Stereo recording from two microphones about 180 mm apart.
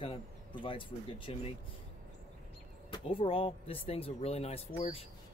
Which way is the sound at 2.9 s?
30° left (ahead or behind).